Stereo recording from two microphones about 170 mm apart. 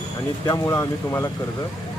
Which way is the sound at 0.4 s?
20° left (ahead or behind).